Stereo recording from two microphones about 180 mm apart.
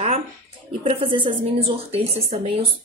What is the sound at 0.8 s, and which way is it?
Speech, 30° right (ahead or behind).